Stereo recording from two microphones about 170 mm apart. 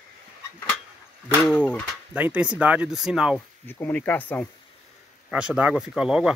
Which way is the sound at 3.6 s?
10° left (ahead or behind).